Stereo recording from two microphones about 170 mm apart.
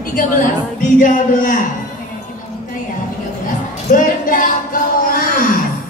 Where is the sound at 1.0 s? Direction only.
50° left (ahead or behind).